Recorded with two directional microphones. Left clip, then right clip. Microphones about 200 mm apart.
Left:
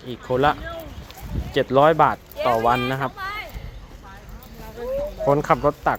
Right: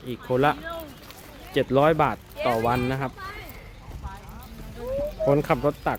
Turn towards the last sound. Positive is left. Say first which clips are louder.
# left 5 dB
turn(degrees=-10)  # may be behind; listen again after turning